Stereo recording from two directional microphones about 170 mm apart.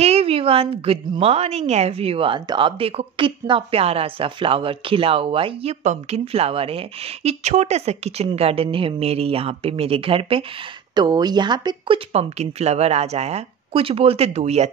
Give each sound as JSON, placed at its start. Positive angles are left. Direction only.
{"t": 0.0, "sound": "a woman's voice", "side_deg": -35}
{"t": 12.1, "sound": "a woman's voice", "side_deg": -40}